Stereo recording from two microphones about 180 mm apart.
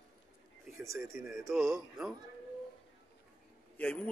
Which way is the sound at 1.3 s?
Centre (ahead or behind).